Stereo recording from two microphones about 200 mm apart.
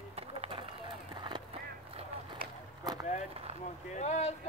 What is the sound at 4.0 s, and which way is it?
Speech, 35° left (ahead or behind).